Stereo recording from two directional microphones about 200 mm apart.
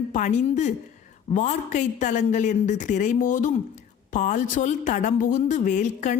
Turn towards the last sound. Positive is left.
turn(degrees=40)  # may be behind; listen again after turning